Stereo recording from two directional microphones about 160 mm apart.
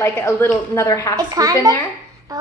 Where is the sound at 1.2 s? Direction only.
20° right (ahead or behind).